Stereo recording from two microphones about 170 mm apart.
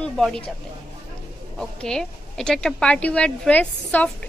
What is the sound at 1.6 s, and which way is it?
A woman's voice, 5° left (ahead or behind).